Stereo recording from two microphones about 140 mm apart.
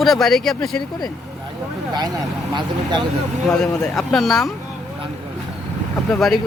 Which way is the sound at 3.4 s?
5° left (ahead or behind).